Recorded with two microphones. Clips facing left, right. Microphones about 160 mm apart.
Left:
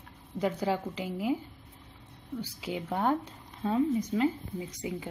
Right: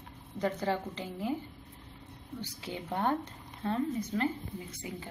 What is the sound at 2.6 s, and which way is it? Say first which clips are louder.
Speech: left 3 dB; 10° left (ahead or behind).